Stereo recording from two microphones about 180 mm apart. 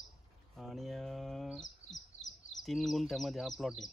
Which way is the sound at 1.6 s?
40° left (ahead or behind).